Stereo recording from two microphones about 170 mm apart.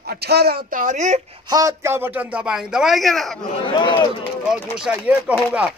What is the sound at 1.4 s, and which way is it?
A man's voice, 20° right (ahead or behind).